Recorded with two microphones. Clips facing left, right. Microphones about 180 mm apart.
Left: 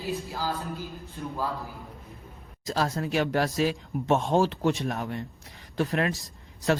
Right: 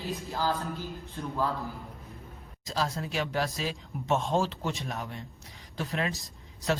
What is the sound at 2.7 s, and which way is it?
Speech, 55° left (ahead or behind).